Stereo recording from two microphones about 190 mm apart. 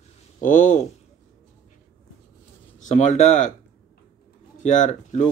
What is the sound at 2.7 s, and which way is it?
Speech, 40° left (ahead or behind).